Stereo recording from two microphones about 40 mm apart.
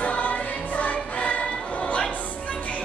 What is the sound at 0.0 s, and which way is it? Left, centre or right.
Music, left.